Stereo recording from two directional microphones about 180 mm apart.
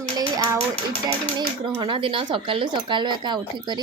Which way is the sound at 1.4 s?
25° right (ahead or behind).